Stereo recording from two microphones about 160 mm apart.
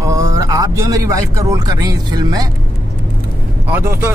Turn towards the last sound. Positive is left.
turn(degrees=-10)  # may be behind; listen again after turning